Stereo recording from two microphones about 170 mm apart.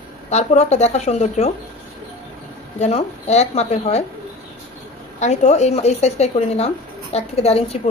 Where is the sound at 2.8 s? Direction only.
40° left (ahead or behind).